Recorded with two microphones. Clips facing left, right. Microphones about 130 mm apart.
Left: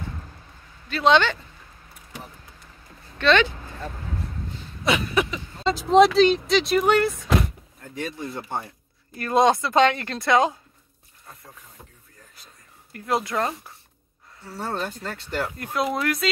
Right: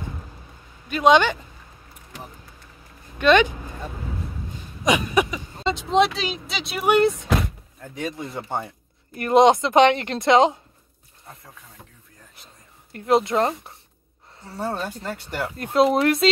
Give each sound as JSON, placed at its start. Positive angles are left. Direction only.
{"t": 0.8, "sound": "speech", "side_deg": -15}
{"t": 3.2, "sound": "a sound", "side_deg": -15}
{"t": 5.6, "sound": "speech", "side_deg": 0}
{"t": 6.9, "sound": "a woman's voice", "side_deg": -20}
{"t": 12.9, "sound": "a woman's voice", "side_deg": -25}
{"t": 14.4, "sound": "speech", "side_deg": -15}
{"t": 15.5, "sound": "a woman's voice", "side_deg": -25}